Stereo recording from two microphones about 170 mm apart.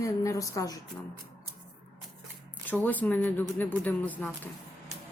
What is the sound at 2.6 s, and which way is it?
Speech, 10° left (ahead or behind).